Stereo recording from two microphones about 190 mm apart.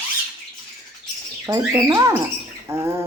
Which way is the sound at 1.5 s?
15° right (ahead or behind).